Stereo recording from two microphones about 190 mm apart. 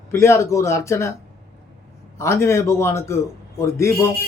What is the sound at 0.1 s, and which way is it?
A man's voice, 15° left (ahead or behind).